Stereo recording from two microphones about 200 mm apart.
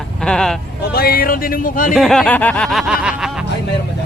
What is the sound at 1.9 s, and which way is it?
Speech, centre (ahead or behind).